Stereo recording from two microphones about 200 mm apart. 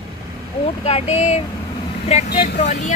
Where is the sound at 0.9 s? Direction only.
30° left (ahead or behind).